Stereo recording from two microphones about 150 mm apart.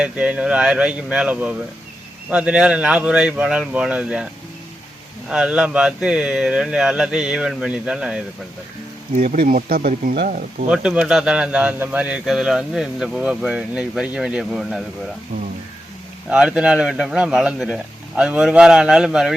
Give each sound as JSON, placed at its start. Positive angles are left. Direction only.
{"t": 0.0, "sound": "speech", "side_deg": -5}
{"t": 5.3, "sound": "speech", "side_deg": -5}
{"t": 9.1, "sound": "speech", "side_deg": -60}
{"t": 10.7, "sound": "speech", "side_deg": -5}
{"t": 16.3, "sound": "speech", "side_deg": -5}